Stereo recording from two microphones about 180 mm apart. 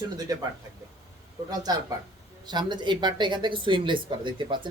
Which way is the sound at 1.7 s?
20° right (ahead or behind).